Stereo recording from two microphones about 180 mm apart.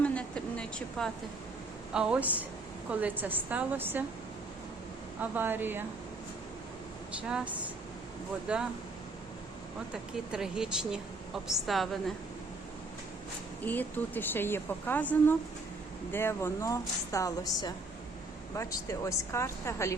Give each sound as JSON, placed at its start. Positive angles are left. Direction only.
{"t": 0.0, "sound": "a sound", "side_deg": 5}
{"t": 1.9, "sound": "a woman's voice", "side_deg": -5}
{"t": 5.2, "sound": "a woman's voice", "side_deg": -10}
{"t": 7.2, "sound": "a woman's voice", "side_deg": -5}
{"t": 9.9, "sound": "speech", "side_deg": -5}
{"t": 13.7, "sound": "speech", "side_deg": 10}